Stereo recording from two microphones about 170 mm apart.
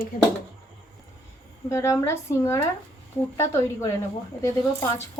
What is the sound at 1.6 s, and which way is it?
Speech, 15° left (ahead or behind).